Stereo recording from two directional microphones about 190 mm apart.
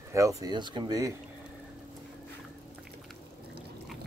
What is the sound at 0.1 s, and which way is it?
Speech, 15° right (ahead or behind).